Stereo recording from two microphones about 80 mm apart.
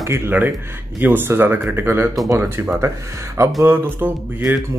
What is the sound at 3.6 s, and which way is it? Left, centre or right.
Speech, right.